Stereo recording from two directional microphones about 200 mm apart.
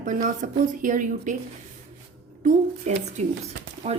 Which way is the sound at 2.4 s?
35° right (ahead or behind).